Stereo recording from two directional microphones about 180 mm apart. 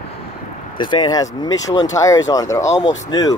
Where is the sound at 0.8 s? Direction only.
25° left (ahead or behind).